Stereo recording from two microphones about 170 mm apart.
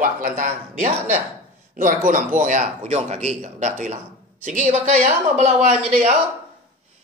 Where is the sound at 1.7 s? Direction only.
55° right (ahead or behind).